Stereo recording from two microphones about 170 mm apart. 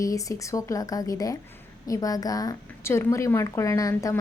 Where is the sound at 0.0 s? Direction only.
20° left (ahead or behind).